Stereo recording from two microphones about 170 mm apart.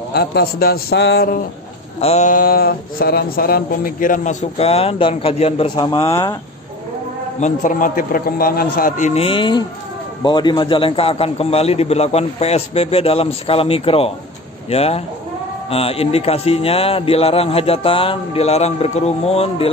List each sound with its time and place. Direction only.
0.1 s a man's voice: 70° left (ahead or behind)
2.0 s speech: 40° left (ahead or behind)
5.8 s speech: 20° left (ahead or behind)
7.3 s speech: 45° left (ahead or behind)
9.2 s a man's voice: 30° left (ahead or behind)